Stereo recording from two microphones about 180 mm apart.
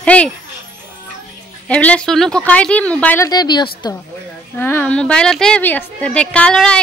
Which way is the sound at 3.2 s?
25° left (ahead or behind).